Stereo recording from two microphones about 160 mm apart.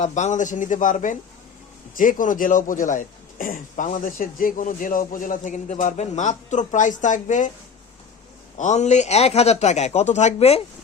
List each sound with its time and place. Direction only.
0.0 s speech: 50° left (ahead or behind)
8.5 s speech: 45° left (ahead or behind)